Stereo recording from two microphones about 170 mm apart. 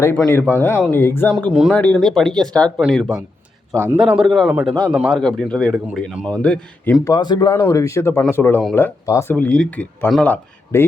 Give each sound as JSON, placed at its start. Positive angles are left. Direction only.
{"t": 0.3, "sound": "speech", "side_deg": 10}
{"t": 7.0, "sound": "speech", "side_deg": 25}